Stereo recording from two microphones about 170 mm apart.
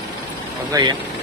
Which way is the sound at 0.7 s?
25° right (ahead or behind).